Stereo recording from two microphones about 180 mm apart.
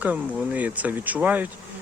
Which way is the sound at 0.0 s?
10° right (ahead or behind).